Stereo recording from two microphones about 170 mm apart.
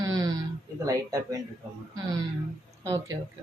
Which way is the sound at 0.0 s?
20° right (ahead or behind).